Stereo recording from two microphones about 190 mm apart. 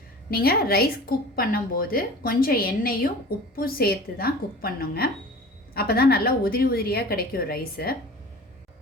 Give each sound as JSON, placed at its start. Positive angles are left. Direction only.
{"t": 0.3, "sound": "a woman's voice", "side_deg": 55}